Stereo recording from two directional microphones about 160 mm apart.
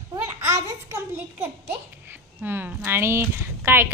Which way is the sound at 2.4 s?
10° right (ahead or behind).